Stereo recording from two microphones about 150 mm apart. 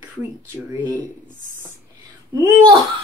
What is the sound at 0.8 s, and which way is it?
Speech, 10° left (ahead or behind).